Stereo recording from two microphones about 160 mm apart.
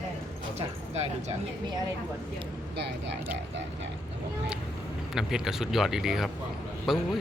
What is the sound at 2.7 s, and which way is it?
Speech, 90° right.